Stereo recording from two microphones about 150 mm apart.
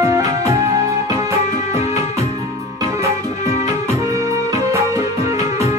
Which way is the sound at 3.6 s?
20° right (ahead or behind).